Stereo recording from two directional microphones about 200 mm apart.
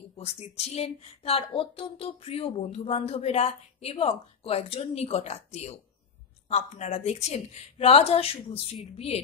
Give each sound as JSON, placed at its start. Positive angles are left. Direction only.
{"t": 0.1, "sound": "a woman's voice", "side_deg": 30}